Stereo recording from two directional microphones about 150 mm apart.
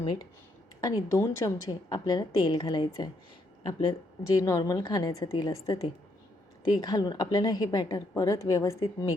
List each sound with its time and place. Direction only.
0.0 s a woman's voice: 30° left (ahead or behind)